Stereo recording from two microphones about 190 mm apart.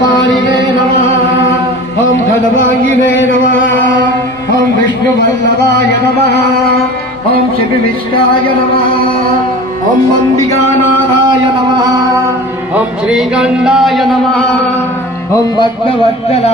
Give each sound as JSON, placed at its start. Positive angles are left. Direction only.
{"t": 2.6, "sound": "a sound", "side_deg": 85}
{"t": 12.7, "sound": "music", "side_deg": -5}
{"t": 15.5, "sound": "a man's voice", "side_deg": 25}